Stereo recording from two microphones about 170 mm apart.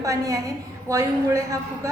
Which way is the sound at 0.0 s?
20° right (ahead or behind).